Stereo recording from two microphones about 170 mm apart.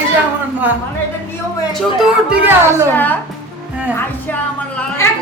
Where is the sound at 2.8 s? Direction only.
10° left (ahead or behind).